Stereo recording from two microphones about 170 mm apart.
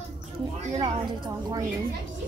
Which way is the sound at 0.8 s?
25° right (ahead or behind).